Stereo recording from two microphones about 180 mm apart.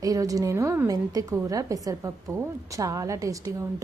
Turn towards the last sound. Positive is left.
turn(degrees=-15)  # may be behind; listen again after turning